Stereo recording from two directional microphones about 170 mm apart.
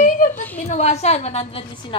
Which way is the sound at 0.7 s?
40° left (ahead or behind).